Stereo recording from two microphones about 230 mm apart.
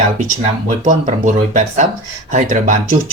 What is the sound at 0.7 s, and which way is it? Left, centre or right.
Speech, right.